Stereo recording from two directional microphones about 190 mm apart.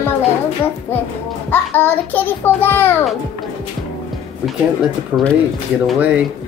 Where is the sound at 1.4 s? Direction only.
10° left (ahead or behind).